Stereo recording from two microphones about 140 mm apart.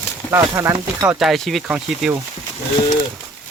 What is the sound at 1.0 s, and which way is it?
Speech, centre (ahead or behind).